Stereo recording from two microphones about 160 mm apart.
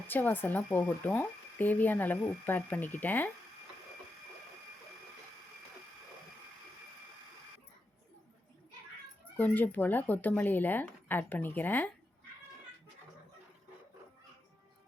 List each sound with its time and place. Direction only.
0.1 s speech: 10° left (ahead or behind)
9.4 s speech: 10° left (ahead or behind)